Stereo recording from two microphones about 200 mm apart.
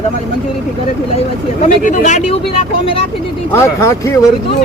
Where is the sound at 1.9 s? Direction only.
35° left (ahead or behind).